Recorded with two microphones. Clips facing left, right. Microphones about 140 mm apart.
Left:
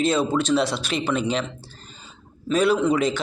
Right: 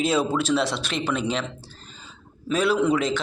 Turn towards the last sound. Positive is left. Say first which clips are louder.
# left 1 dB
turn(degrees=0)  # may be behind; listen again after turning